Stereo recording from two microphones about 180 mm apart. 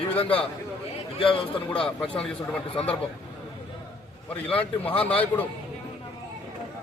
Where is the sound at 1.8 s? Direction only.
5° left (ahead or behind).